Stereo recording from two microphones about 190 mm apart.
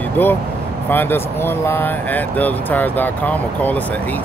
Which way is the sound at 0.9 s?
10° left (ahead or behind).